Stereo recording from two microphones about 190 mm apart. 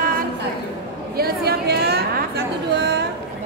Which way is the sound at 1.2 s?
55° right (ahead or behind).